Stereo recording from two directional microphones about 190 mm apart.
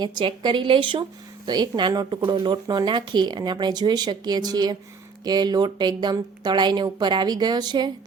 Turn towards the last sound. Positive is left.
turn(degrees=-20)  # may be behind; listen again after turning